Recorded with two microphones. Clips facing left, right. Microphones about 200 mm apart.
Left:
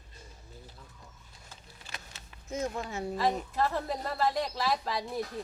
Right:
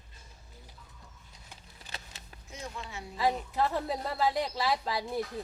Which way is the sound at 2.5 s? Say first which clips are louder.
Left 8 dB; 45° left (ahead or behind).